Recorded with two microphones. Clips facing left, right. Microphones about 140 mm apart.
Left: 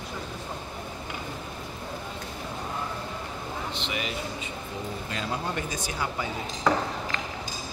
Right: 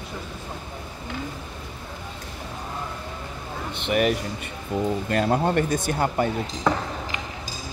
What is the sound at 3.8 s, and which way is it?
Speech, 55° right (ahead or behind).